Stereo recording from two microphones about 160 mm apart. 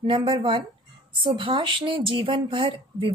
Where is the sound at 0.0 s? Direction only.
35° right (ahead or behind).